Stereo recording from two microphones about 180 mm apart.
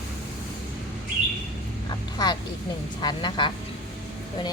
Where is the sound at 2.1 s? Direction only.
25° left (ahead or behind).